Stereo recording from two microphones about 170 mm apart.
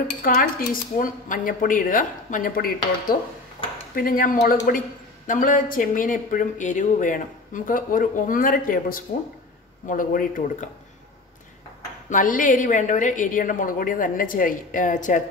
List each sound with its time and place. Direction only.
0.2 s a man's voice: 55° left (ahead or behind)
12.1 s a man's voice: 50° left (ahead or behind)